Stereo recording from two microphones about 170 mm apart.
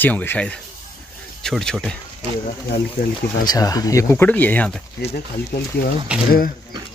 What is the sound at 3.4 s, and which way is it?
Speech, 20° left (ahead or behind).